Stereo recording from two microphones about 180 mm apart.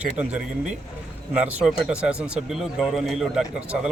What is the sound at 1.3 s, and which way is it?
Speech, 10° right (ahead or behind).